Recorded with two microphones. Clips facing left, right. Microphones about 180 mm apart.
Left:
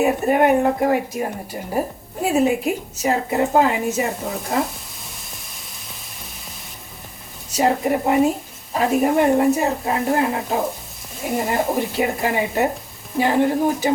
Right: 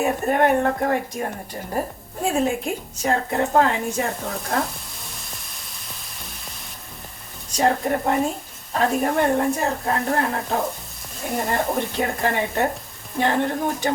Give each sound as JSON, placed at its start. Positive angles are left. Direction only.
{"t": 0.0, "sound": "a woman's voice", "side_deg": 5}
{"t": 7.5, "sound": "a woman's voice", "side_deg": 5}